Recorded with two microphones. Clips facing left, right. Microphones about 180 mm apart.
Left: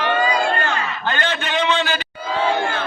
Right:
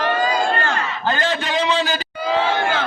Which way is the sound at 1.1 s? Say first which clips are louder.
Right 2 dB; 35° right (ahead or behind).